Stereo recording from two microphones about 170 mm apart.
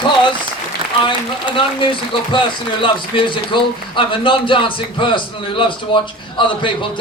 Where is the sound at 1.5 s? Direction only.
30° left (ahead or behind).